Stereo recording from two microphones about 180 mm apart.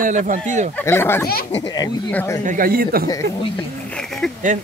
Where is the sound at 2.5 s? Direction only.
50° right (ahead or behind).